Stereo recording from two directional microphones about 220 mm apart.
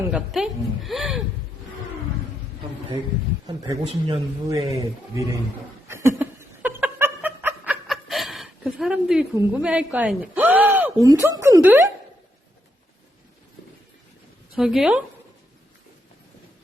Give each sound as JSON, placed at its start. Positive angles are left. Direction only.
{"t": 0.0, "sound": "a woman's voice", "side_deg": -5}
{"t": 3.4, "sound": "a man's voice", "side_deg": -15}
{"t": 5.9, "sound": "snicker", "side_deg": -10}
{"t": 14.5, "sound": "a woman's voice", "side_deg": 0}